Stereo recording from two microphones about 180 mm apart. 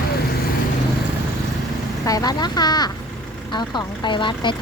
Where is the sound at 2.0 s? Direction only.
20° left (ahead or behind).